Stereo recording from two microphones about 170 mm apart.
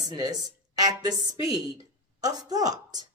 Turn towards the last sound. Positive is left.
turn(degrees=-20)  # may be behind; listen again after turning